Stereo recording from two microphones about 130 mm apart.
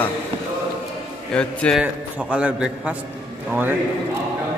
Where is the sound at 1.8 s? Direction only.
10° right (ahead or behind).